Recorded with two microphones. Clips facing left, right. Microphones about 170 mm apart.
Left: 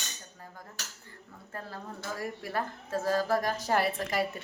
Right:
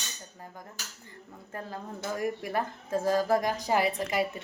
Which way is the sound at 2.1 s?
15° right (ahead or behind).